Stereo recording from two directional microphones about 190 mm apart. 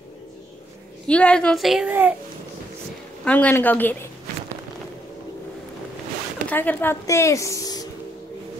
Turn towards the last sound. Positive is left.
turn(degrees=20)  # may be behind; listen again after turning